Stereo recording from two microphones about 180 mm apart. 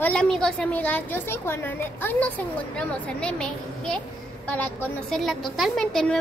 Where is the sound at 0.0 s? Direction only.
5° left (ahead or behind).